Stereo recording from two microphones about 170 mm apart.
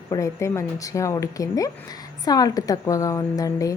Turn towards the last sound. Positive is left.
turn(degrees=20)  # may be behind; listen again after turning